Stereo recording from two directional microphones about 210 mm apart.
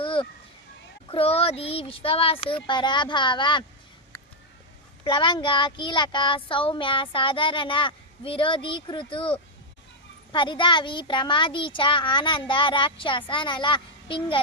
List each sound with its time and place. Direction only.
0.0 s a sound: 25° left (ahead or behind)
1.1 s speech: 30° left (ahead or behind)
5.0 s speech: 25° left (ahead or behind)